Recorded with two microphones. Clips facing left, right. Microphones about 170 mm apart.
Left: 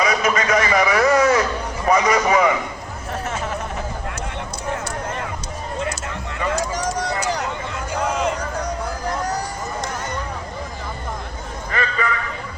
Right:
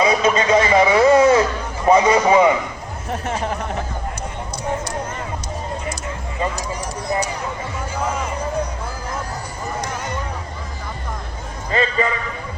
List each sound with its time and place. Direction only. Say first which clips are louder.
0.0 s a man's voice: right 3 dB; 25° right (ahead or behind)
6.5 s run: left 5 dB; 85° left
11.7 s a sound: right 4 dB; 25° right (ahead or behind)